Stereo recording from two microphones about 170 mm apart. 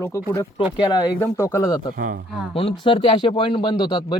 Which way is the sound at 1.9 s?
55° right (ahead or behind).